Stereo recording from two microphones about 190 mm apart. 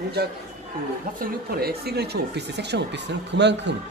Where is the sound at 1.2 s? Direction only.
55° right (ahead or behind).